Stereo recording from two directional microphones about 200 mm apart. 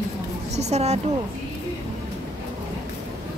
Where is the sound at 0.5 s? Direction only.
35° right (ahead or behind).